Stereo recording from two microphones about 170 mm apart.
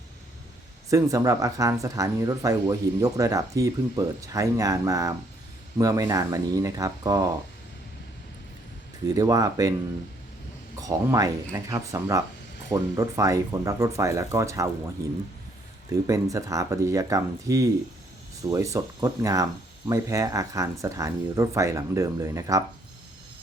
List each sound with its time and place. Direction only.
0.9 s speech: 20° right (ahead or behind)
9.0 s speech: 20° right (ahead or behind)
10.8 s speech: 20° right (ahead or behind)
16.0 s speech: 20° right (ahead or behind)